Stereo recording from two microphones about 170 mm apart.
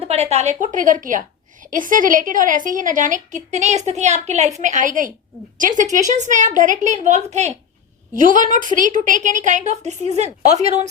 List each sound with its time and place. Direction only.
0.1 s a woman's voice: 40° right (ahead or behind)